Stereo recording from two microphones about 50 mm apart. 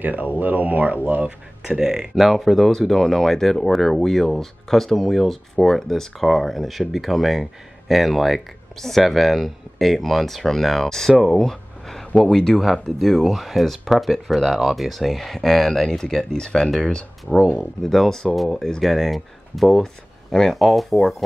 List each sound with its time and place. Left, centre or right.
0.0 s speech: right
1.8 s speech: centre
20.5 s speech: centre